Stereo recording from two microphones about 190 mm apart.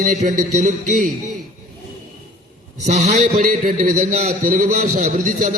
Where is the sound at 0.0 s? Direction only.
40° right (ahead or behind).